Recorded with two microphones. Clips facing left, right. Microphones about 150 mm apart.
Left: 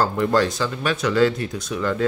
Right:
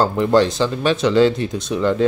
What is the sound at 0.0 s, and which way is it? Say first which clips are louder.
Speech: right 4 dB; 20° right (ahead or behind).